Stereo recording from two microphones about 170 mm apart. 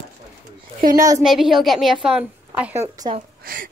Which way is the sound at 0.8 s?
55° right (ahead or behind).